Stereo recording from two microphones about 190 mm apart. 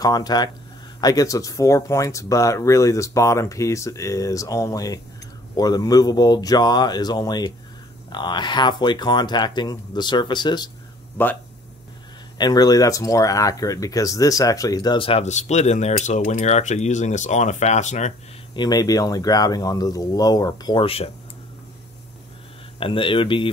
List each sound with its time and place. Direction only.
0.0 s speech: 20° left (ahead or behind)
11.2 s speech: 10° left (ahead or behind)
12.4 s speech: 20° left (ahead or behind); by 18.1 s 40° left (ahead or behind)
18.5 s speech: 20° left (ahead or behind)
22.8 s speech: 30° left (ahead or behind)